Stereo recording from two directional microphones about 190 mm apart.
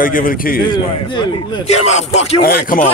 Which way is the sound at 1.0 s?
25° left (ahead or behind).